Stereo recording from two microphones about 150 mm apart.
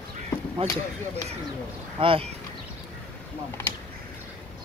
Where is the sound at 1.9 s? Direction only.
35° right (ahead or behind).